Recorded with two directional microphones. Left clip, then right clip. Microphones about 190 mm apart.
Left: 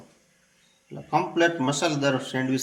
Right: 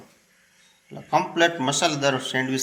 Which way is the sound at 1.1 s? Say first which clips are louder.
Right 2 dB; centre (ahead or behind).